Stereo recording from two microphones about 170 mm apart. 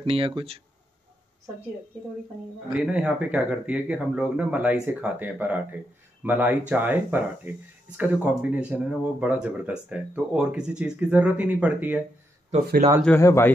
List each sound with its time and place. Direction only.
0.0 s speech: 35° right (ahead or behind)
2.7 s speech: 5° right (ahead or behind)
13.0 s speech: 15° left (ahead or behind)